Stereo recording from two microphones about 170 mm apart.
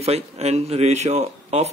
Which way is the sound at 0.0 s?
40° right (ahead or behind).